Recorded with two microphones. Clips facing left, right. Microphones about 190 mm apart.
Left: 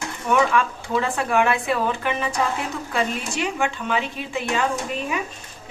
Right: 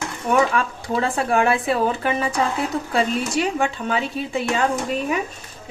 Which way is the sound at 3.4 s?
35° right (ahead or behind).